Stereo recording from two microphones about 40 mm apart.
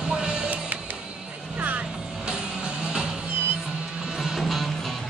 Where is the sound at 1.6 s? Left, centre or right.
Right.